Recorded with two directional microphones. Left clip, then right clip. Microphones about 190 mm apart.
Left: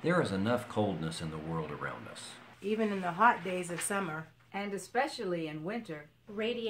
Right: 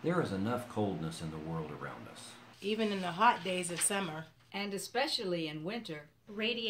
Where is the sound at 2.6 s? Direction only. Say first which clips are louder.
Left 2 dB; 5° right (ahead or behind).